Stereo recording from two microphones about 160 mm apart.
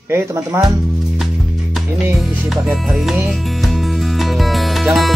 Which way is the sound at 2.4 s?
Centre (ahead or behind).